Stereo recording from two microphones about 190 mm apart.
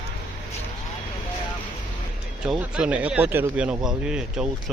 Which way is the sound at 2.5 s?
5° right (ahead or behind).